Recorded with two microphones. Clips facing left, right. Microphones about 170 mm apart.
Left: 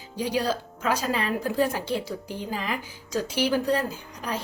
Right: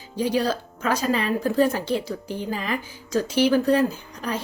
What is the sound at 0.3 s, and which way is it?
Speech, 15° left (ahead or behind).